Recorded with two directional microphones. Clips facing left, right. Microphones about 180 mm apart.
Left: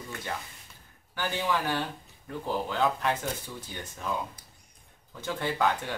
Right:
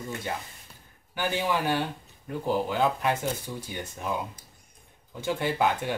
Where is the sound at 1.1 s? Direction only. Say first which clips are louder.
Right 2 dB; 15° right (ahead or behind).